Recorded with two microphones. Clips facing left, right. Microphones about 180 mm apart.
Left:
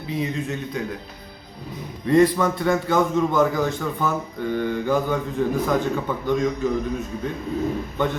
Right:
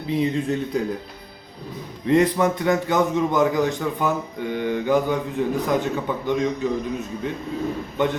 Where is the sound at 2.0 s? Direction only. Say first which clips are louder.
Left 1 dB; 20° right (ahead or behind).